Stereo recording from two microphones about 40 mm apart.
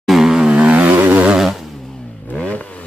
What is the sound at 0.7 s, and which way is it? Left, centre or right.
Motorcycle, right.